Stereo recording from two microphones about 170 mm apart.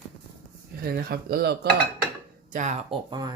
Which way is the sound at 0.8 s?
65° right (ahead or behind).